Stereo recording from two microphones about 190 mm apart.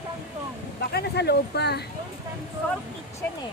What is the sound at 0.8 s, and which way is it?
Speech, 60° left (ahead or behind).